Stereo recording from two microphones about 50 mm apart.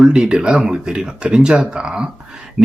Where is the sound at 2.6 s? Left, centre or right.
Right.